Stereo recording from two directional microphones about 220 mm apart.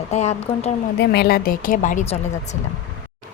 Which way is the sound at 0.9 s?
50° left (ahead or behind).